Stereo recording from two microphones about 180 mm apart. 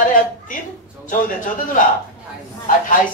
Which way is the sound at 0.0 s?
45° left (ahead or behind).